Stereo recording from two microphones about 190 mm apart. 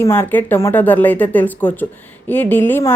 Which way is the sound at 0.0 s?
10° left (ahead or behind).